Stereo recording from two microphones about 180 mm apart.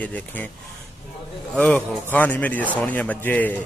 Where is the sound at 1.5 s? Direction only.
5° left (ahead or behind).